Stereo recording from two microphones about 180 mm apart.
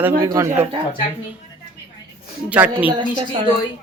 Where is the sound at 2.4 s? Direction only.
10° right (ahead or behind).